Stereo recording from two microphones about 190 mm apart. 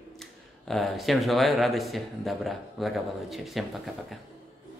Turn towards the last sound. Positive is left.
turn(degrees=0)  # may be behind; listen again after turning